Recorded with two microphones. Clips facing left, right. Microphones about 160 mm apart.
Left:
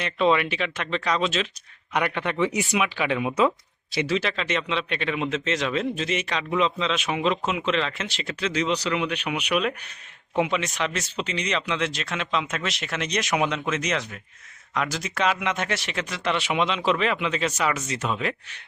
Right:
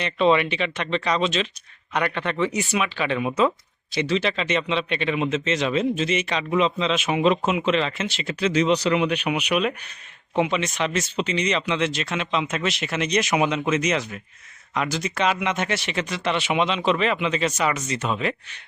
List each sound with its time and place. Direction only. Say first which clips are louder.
0.0 s speech: right 2 dB; 5° left (ahead or behind)
7.2 s speech: right 7 dB; 15° right (ahead or behind)
8.4 s speech: right 5 dB; 15° right (ahead or behind)
9.4 s speech: right 2 dB; 5° right (ahead or behind)